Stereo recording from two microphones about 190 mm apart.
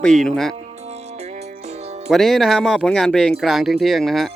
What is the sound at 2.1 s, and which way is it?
Speech, centre (ahead or behind).